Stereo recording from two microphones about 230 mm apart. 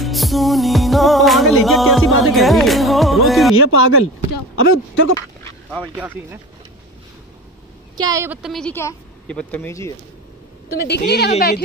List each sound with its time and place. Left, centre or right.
0.0 s music: centre
3.5 s speech: left
5.8 s speech: centre
8.0 s speech: centre
10.8 s a woman's voice: left